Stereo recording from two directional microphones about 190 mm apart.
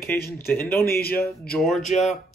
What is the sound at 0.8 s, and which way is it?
Speech, 55° left (ahead or behind).